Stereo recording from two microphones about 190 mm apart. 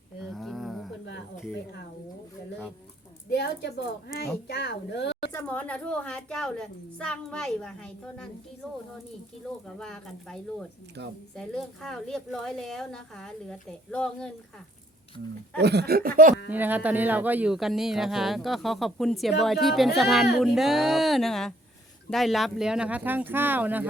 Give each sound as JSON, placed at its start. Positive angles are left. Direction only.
{"t": 0.3, "sound": "a sound", "side_deg": 0}
{"t": 3.3, "sound": "a woman's voice", "side_deg": 65}
{"t": 5.3, "sound": "speech", "side_deg": 10}
{"t": 9.7, "sound": "speech", "side_deg": 5}
{"t": 11.0, "sound": "speech", "side_deg": -60}
{"t": 11.3, "sound": "speech", "side_deg": 5}
{"t": 15.5, "sound": "speech", "side_deg": -60}
{"t": 16.5, "sound": "speech", "side_deg": -10}